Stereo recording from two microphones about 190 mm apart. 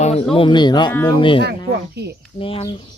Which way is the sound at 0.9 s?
10° left (ahead or behind).